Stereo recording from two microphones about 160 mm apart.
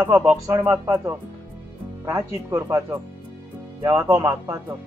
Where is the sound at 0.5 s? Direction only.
15° right (ahead or behind).